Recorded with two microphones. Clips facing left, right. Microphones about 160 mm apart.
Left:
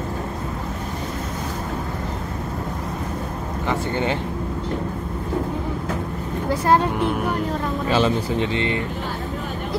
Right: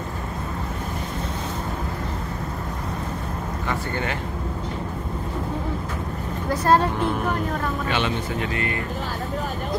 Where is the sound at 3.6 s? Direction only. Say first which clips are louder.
Left 5 dB; 25° left (ahead or behind).